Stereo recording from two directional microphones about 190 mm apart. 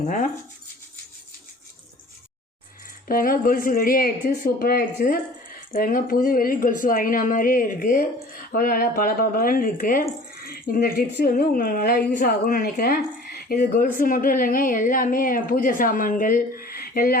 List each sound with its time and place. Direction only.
3.1 s speech: 50° left (ahead or behind)